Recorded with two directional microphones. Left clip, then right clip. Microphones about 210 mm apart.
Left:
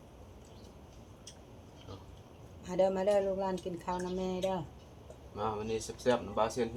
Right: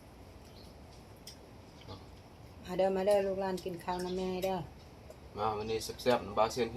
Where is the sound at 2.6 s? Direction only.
20° left (ahead or behind).